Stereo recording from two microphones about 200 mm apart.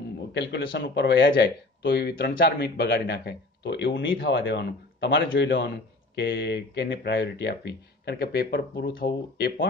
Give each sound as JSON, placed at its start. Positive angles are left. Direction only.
{"t": 0.3, "sound": "speech", "side_deg": 55}